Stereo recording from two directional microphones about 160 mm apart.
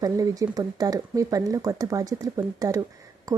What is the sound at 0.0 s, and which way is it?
Speech, 20° right (ahead or behind).